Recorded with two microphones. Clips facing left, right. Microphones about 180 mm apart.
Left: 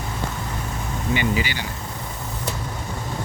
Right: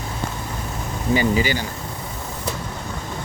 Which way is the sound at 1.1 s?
40° right (ahead or behind).